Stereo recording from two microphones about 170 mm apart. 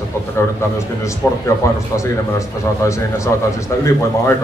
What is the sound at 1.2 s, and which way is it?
A man's voice, 15° left (ahead or behind).